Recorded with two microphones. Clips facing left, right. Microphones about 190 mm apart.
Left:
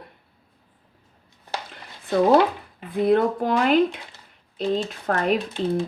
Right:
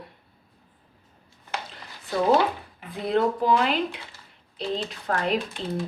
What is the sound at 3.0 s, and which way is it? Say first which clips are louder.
Speech: left 2 dB; 55° left (ahead or behind).